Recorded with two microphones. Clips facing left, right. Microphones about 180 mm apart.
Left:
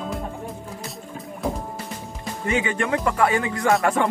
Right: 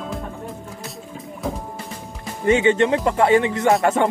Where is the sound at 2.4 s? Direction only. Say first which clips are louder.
Right 8 dB; 25° right (ahead or behind).